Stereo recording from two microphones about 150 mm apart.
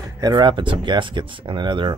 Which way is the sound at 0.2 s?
25° right (ahead or behind).